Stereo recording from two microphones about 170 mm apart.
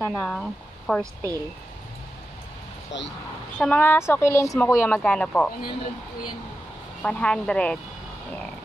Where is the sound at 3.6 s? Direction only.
10° left (ahead or behind).